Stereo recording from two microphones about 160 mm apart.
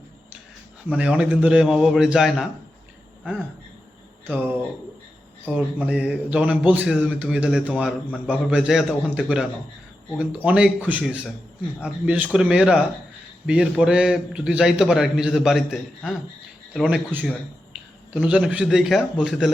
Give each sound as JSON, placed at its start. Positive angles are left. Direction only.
{"t": 0.9, "sound": "a man's voice", "side_deg": -5}
{"t": 4.3, "sound": "a man's voice", "side_deg": -10}
{"t": 5.5, "sound": "a man's voice", "side_deg": -10}